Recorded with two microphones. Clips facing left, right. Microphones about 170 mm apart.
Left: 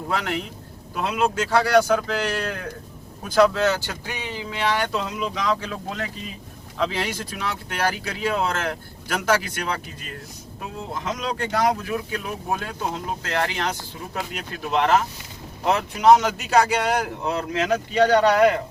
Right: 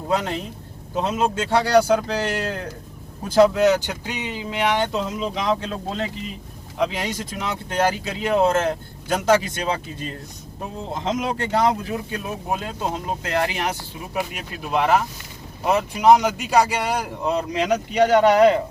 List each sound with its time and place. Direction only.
0.1 s speech: 20° right (ahead or behind)